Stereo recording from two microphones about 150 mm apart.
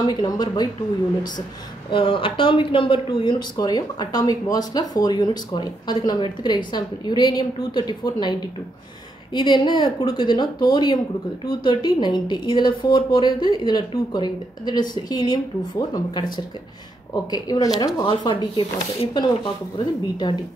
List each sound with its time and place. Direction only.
0.0 s speech: 25° left (ahead or behind)
1.9 s speech: 35° left (ahead or behind)